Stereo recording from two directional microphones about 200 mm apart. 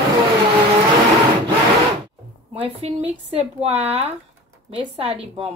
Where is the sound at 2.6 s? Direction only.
30° right (ahead or behind).